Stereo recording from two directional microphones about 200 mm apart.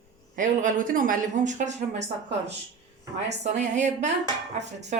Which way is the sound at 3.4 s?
35° right (ahead or behind).